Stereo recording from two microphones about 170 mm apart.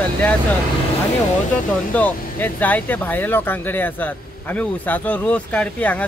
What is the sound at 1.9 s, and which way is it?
Speech, 10° left (ahead or behind).